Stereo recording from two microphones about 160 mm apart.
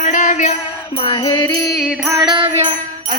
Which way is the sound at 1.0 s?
30° left (ahead or behind).